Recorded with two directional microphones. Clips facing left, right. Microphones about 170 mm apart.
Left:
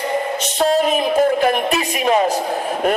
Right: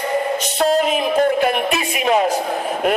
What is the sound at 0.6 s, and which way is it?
Music, centre (ahead or behind).